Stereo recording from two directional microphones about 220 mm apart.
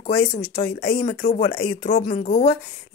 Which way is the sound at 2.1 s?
35° left (ahead or behind).